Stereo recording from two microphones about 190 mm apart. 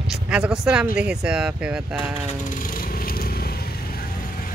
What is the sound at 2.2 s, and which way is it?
Vehicle, 45° left (ahead or behind).